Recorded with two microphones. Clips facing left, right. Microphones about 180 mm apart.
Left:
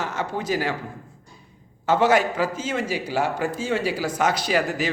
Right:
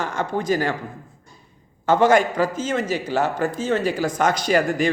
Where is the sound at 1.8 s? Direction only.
5° left (ahead or behind).